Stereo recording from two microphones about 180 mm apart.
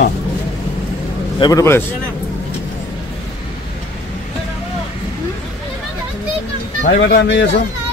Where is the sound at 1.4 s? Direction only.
20° left (ahead or behind).